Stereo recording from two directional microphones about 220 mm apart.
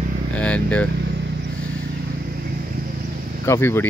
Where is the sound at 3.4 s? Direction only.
10° left (ahead or behind).